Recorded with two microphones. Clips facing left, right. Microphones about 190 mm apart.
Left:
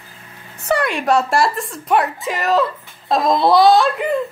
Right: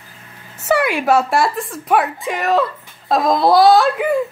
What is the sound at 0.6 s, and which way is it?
A woman's voice, 5° right (ahead or behind).